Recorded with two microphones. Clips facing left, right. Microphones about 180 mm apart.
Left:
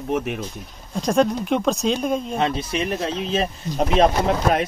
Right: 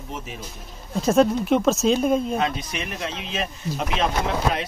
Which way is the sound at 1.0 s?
5° right (ahead or behind).